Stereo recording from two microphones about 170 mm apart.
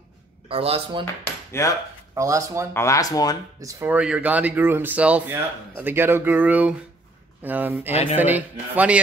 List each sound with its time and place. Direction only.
0.5 s speech: 35° right (ahead or behind)
1.5 s speech: 15° left (ahead or behind)
2.1 s speech: 20° right (ahead or behind)
2.7 s speech: 15° left (ahead or behind)
3.6 s speech: 10° right (ahead or behind)